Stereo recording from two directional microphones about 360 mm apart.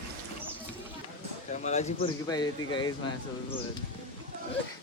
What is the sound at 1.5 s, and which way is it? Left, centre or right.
Speech, centre.